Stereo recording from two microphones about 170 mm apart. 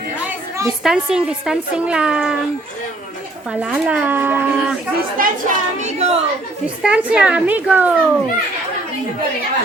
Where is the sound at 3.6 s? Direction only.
5° right (ahead or behind).